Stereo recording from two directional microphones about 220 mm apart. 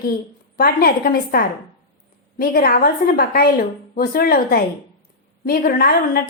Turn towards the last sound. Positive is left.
turn(degrees=45)  # may be behind; listen again after turning